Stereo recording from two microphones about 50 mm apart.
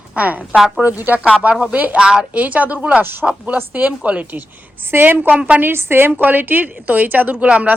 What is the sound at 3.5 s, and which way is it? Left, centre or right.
A woman's voice, right.